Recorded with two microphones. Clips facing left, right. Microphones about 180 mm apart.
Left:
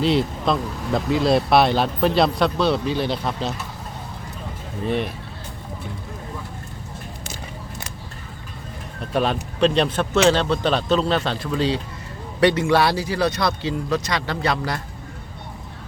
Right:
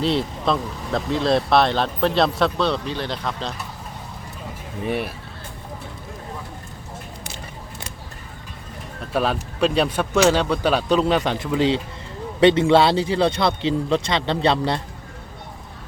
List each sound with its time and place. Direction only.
0.0 s speech: centre (ahead or behind)
4.8 s speech: 10° right (ahead or behind)
9.1 s speech: 5° right (ahead or behind); by 14.8 s 25° right (ahead or behind)